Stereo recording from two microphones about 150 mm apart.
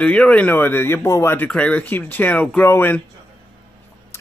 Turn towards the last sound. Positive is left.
turn(degrees=15)  # may be behind; listen again after turning